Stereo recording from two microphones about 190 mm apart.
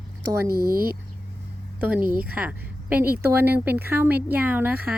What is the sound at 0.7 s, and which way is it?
Speech, 50° right (ahead or behind).